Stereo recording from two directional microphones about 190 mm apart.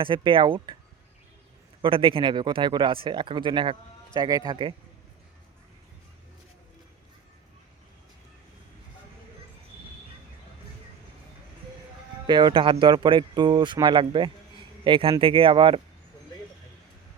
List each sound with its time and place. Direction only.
0.0 s speech: 25° right (ahead or behind)
1.8 s speech: 30° right (ahead or behind)
12.2 s speech: 25° right (ahead or behind)